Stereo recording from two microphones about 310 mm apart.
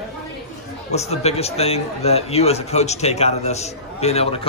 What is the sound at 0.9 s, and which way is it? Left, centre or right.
A man's voice, left.